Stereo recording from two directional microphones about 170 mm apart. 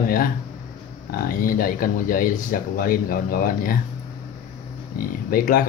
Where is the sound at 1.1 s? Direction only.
55° left (ahead or behind).